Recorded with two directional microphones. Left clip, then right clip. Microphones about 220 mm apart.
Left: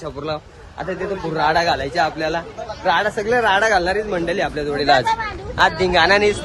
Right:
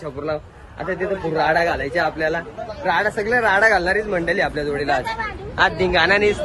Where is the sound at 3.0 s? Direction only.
Centre (ahead or behind).